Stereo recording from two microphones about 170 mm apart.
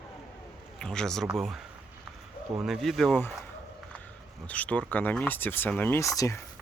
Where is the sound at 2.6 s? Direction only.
Centre (ahead or behind).